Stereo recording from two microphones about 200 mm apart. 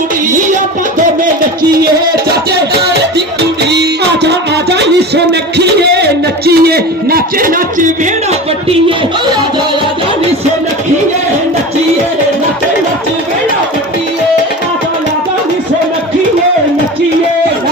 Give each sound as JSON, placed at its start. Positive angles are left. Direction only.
{"t": 3.2, "sound": "music", "side_deg": -55}